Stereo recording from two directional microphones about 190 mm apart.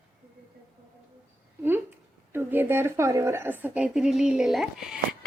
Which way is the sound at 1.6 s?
10° right (ahead or behind).